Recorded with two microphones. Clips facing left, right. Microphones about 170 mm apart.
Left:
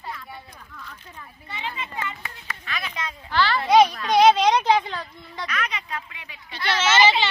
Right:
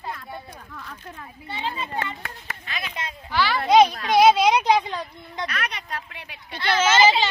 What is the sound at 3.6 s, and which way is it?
Speech, 30° right (ahead or behind).